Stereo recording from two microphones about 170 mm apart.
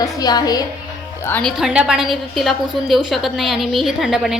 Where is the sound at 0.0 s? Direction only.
25° left (ahead or behind).